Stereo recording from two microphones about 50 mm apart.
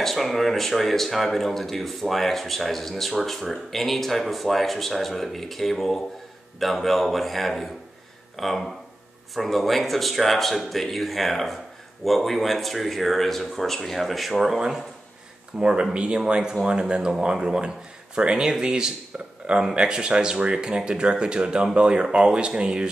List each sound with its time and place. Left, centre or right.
0.0 s speech: centre
14.3 s speech: centre
15.6 s speech: right